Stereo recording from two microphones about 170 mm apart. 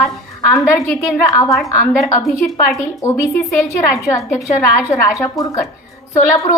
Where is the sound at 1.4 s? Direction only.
Centre (ahead or behind).